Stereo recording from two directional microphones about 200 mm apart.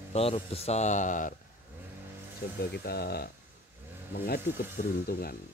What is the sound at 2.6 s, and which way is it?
Speech, 50° left (ahead or behind).